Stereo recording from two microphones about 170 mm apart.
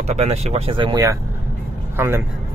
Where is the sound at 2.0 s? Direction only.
15° right (ahead or behind).